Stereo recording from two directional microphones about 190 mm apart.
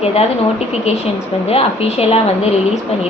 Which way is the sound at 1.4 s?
30° left (ahead or behind).